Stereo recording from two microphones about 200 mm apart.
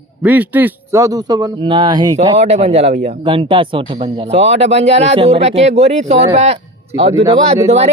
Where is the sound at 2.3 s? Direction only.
35° right (ahead or behind).